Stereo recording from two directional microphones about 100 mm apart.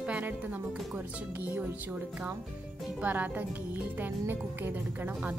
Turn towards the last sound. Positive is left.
turn(degrees=-15)  # may be behind; listen again after turning